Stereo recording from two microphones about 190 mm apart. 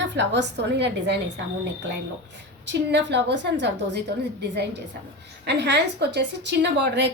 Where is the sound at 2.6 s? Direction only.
65° right (ahead or behind).